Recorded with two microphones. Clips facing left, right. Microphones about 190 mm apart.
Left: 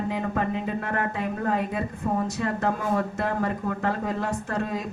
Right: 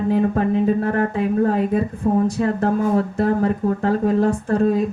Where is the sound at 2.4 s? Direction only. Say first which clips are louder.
Right 7 dB; 35° right (ahead or behind).